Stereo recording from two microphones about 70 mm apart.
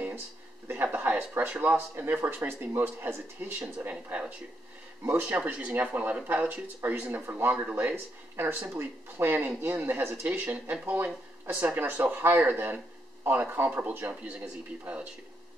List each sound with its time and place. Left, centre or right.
0.8 s a sound: right
1.1 s speech: right
1.5 s speech: centre
2.2 s speech: right
3.9 s speech: centre